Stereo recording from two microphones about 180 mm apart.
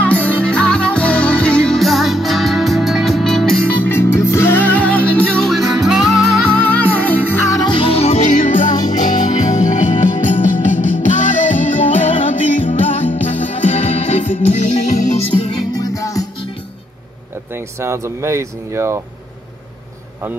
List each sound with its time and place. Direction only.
0.0 s music: 10° left (ahead or behind)
7.4 s music: 25° left (ahead or behind); by 12.2 s 40° left (ahead or behind)
13.4 s music: 40° left (ahead or behind)
15.8 s music: 20° left (ahead or behind)
17.6 s speech: 15° right (ahead or behind)